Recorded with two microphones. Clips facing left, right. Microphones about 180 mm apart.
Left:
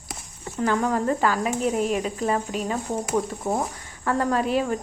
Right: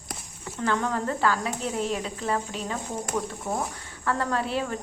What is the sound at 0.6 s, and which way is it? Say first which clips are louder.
Speech: left 4 dB; 10° left (ahead or behind).